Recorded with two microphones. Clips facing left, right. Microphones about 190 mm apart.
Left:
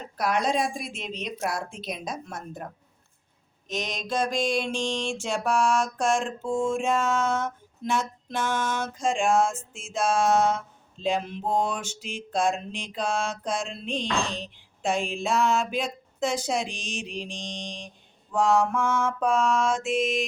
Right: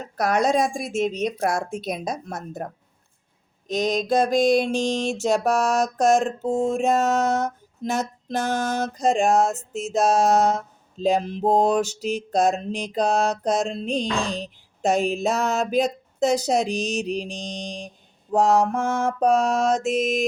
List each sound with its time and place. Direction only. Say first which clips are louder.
0.0 s speech: right 5 dB; 45° right (ahead or behind)
3.7 s mantra: right 9 dB; 40° right (ahead or behind)